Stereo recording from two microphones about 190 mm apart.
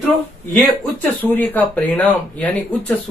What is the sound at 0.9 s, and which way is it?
Speech, 10° left (ahead or behind).